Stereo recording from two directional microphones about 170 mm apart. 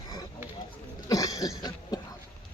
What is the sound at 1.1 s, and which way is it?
Cough, 20° left (ahead or behind).